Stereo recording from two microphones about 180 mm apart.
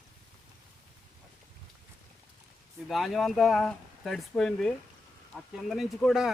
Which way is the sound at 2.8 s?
Centre (ahead or behind).